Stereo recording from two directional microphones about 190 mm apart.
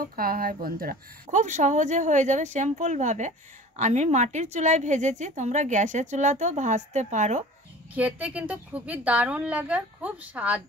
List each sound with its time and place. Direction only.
0.0 s a woman's voice: 50° right (ahead or behind)
7.9 s a woman's voice: 5° right (ahead or behind)